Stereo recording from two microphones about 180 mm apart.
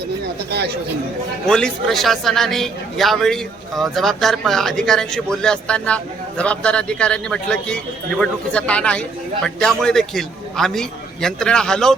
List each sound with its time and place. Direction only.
0.5 s speech: 65° right (ahead or behind)
1.5 s a man's voice: 5° left (ahead or behind)